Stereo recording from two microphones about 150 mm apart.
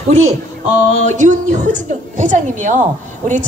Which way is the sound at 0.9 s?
55° right (ahead or behind).